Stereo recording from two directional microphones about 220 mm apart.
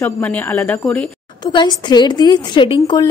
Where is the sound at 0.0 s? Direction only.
10° left (ahead or behind).